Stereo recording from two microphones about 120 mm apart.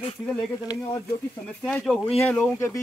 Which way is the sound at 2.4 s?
25° left (ahead or behind).